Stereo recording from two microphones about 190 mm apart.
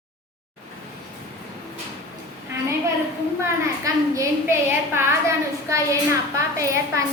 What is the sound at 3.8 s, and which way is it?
A woman's voice, 15° right (ahead or behind).